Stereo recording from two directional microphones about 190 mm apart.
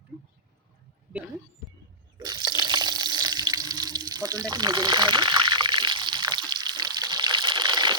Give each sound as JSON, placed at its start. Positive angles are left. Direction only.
{"t": 2.1, "sound": "water", "side_deg": -20}